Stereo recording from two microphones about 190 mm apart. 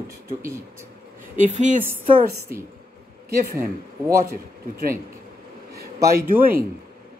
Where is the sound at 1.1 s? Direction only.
40° right (ahead or behind).